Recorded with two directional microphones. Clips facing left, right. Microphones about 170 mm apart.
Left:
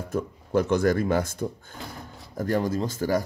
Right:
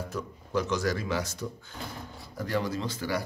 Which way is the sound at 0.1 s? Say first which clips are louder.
Left 8 dB; 55° left (ahead or behind).